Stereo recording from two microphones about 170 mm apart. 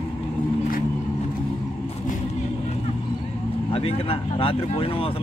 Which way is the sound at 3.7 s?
35° left (ahead or behind).